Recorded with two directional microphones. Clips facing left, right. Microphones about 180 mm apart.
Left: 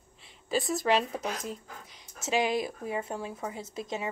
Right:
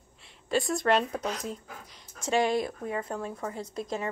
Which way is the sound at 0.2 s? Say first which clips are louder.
Right 2 dB; centre (ahead or behind).